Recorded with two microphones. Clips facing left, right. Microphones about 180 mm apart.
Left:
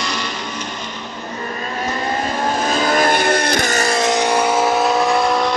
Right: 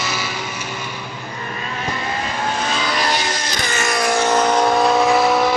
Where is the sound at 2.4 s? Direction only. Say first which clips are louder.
Left 5 dB; 40° left (ahead or behind).